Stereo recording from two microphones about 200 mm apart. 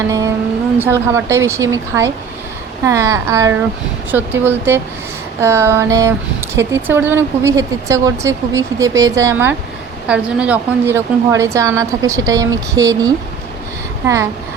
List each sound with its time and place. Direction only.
0.1 s speech: 15° right (ahead or behind)